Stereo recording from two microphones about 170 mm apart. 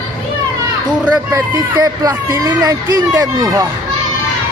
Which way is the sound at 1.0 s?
20° right (ahead or behind).